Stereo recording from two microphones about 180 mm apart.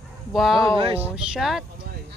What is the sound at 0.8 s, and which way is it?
Speech, 30° right (ahead or behind).